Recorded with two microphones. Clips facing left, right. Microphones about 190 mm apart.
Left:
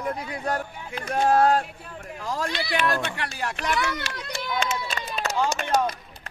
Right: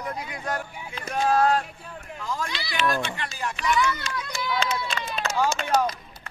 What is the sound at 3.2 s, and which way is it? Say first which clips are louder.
Speech: left 1 dB; 70° left (ahead or behind).